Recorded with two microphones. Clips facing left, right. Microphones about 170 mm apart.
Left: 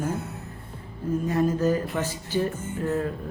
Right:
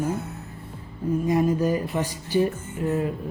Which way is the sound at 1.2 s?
10° right (ahead or behind).